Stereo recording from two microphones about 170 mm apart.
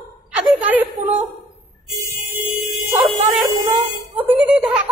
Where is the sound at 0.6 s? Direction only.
10° right (ahead or behind).